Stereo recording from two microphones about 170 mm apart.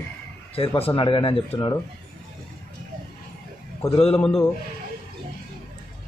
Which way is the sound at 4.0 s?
35° left (ahead or behind).